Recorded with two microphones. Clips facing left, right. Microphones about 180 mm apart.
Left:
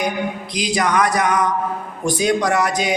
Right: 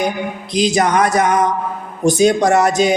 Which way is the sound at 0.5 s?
25° right (ahead or behind).